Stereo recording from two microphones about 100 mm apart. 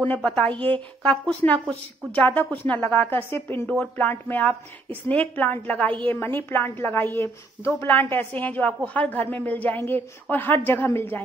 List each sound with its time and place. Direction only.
0.0 s a woman's voice: 15° left (ahead or behind)
1.4 s a woman's voice: 25° left (ahead or behind)
2.1 s a woman's voice: 15° left (ahead or behind)